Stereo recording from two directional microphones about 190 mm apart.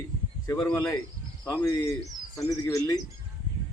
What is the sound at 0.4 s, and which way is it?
A man's voice, 15° left (ahead or behind).